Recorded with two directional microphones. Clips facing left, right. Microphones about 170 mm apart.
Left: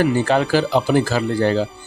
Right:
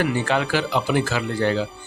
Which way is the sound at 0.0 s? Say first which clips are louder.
Left 5 dB; 35° left (ahead or behind).